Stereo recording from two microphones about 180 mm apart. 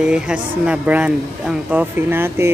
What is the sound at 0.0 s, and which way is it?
Speech, 5° right (ahead or behind).